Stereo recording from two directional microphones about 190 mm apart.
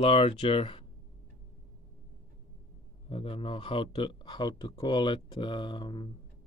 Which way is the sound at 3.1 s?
30° left (ahead or behind).